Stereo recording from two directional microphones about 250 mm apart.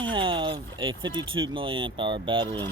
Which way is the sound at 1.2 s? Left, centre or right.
Right.